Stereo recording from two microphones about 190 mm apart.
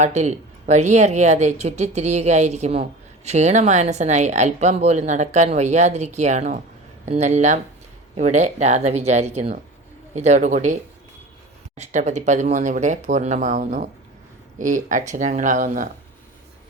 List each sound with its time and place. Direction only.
0.0 s speech: 35° right (ahead or behind)
11.8 s speech: 40° right (ahead or behind)